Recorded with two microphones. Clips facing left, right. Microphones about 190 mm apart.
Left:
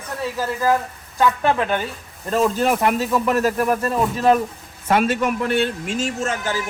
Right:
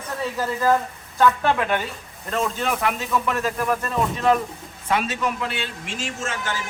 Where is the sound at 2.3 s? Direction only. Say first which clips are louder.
Left 6 dB; 40° left (ahead or behind).